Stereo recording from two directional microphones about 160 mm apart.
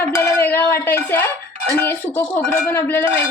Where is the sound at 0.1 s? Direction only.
15° left (ahead or behind).